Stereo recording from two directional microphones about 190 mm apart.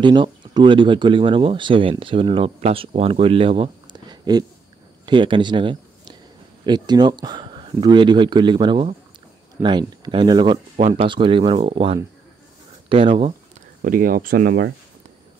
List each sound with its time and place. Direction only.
0.0 s speech: 25° right (ahead or behind)
13.8 s speech: 50° right (ahead or behind)